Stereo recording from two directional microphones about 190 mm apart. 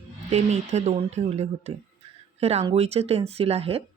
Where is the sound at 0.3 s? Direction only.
35° right (ahead or behind).